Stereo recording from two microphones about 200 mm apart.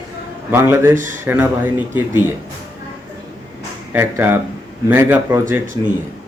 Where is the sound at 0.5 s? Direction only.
10° right (ahead or behind).